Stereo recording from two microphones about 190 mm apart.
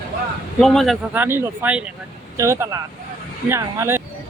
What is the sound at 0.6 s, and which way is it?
Speech, centre (ahead or behind).